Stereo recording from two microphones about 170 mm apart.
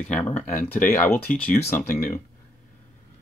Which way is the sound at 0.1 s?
10° left (ahead or behind).